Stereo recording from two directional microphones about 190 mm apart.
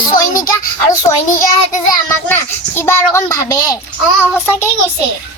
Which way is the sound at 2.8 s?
15° left (ahead or behind).